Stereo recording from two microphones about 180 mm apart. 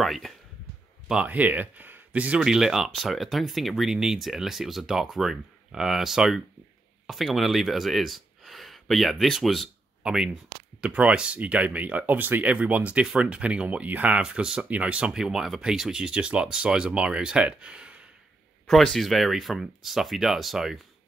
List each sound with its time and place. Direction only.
0.0 s speech: centre (ahead or behind)